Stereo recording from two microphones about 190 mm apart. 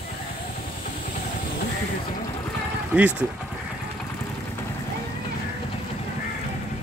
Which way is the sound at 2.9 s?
10° right (ahead or behind).